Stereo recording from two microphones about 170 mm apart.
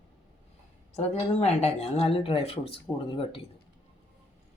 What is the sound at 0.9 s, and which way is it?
Speech, 40° left (ahead or behind).